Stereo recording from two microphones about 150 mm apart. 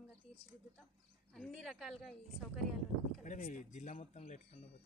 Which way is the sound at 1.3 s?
5° left (ahead or behind).